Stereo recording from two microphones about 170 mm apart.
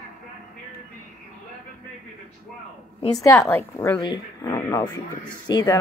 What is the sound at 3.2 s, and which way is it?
Speech, 15° left (ahead or behind).